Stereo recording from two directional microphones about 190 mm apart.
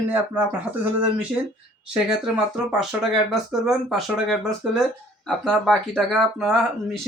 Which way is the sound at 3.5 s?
Centre (ahead or behind).